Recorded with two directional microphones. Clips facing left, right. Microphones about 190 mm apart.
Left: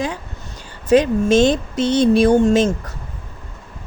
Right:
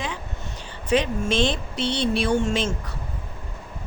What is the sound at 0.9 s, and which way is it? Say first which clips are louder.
Speech: left 9 dB; 45° left (ahead or behind).